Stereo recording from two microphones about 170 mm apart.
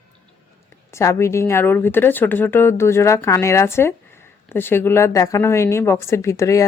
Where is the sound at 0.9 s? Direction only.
15° left (ahead or behind).